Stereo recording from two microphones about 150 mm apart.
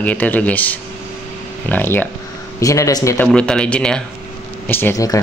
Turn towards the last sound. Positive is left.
turn(degrees=20)  # may be behind; listen again after turning